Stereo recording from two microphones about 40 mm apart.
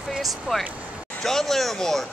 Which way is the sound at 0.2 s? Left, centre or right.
Centre.